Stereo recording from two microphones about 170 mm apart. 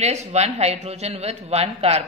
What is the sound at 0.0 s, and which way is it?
A man's voice, 40° right (ahead or behind).